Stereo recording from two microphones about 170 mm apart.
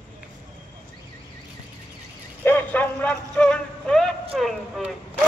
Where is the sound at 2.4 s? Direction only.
10° left (ahead or behind).